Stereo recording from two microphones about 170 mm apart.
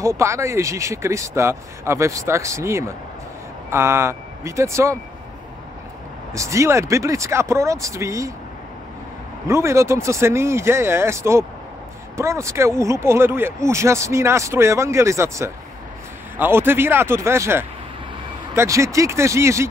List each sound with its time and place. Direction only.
0.0 s speech: 15° right (ahead or behind)
6.3 s speech: 20° right (ahead or behind)
9.5 s speech: 15° right (ahead or behind)